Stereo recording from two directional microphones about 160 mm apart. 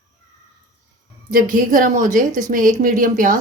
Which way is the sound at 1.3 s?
60° right (ahead or behind).